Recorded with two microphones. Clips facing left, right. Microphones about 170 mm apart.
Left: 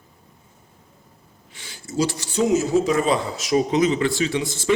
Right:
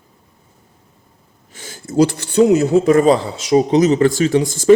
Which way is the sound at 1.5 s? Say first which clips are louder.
Right 7 dB; 45° right (ahead or behind).